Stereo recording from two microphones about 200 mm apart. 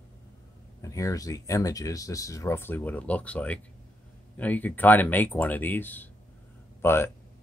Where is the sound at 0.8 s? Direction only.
15° left (ahead or behind).